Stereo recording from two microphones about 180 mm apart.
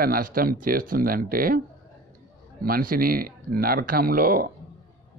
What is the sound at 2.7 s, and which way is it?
Speech, 50° right (ahead or behind).